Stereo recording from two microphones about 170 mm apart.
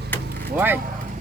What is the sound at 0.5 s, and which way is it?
Speech, 10° right (ahead or behind).